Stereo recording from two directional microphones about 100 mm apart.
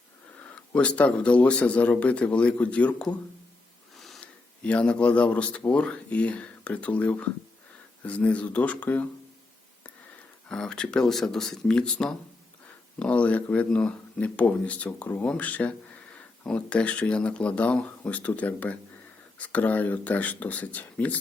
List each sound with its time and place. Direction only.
0.4 s speech: 10° left (ahead or behind)
3.9 s a sound: centre (ahead or behind)
4.6 s speech: 10° left (ahead or behind)
10.5 s speech: 10° left (ahead or behind)